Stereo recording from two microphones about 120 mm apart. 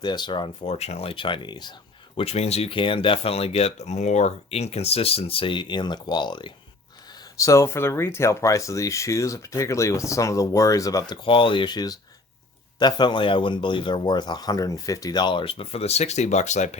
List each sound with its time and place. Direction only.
0.0 s speech: 40° left (ahead or behind)
2.1 s speech: 60° left (ahead or behind); by 6.5 s 40° left (ahead or behind)
7.1 s speech: 25° left (ahead or behind); by 16.6 s 75° left (ahead or behind)